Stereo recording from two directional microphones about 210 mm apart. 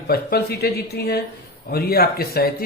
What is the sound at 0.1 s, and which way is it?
Speech, 50° left (ahead or behind).